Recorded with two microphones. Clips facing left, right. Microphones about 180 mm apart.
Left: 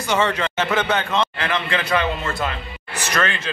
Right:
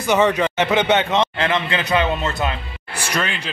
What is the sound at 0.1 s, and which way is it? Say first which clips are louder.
A man's voice: right 4 dB; 15° right (ahead or behind).